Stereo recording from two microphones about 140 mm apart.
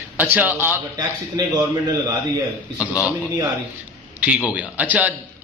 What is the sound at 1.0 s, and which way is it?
Speech, 25° right (ahead or behind).